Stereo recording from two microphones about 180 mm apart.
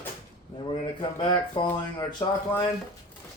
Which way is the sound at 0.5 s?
25° left (ahead or behind).